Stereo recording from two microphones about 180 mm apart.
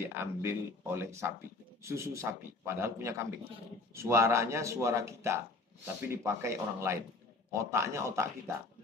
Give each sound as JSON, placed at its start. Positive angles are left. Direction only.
{"t": 0.0, "sound": "speech", "side_deg": -15}